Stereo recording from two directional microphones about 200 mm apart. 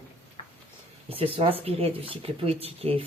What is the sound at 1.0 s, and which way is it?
Speech, 30° right (ahead or behind).